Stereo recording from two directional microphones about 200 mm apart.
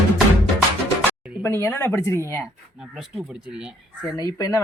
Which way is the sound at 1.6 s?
15° left (ahead or behind).